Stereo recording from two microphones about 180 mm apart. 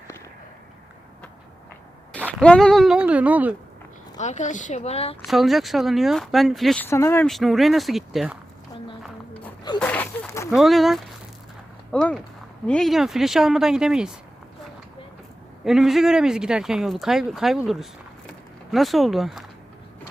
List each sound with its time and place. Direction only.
2.4 s speech: 5° left (ahead or behind)
4.2 s speech: 40° left (ahead or behind)
5.2 s speech: centre (ahead or behind)
6.8 s speech: 15° left (ahead or behind)
7.3 s speech: centre (ahead or behind)
9.8 s a sound: 10° left (ahead or behind)
10.5 s speech: centre (ahead or behind)
15.6 s speech: centre (ahead or behind)
18.3 s a sound: centre (ahead or behind)